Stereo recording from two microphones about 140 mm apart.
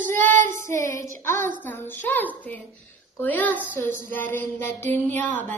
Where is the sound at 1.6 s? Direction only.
15° left (ahead or behind).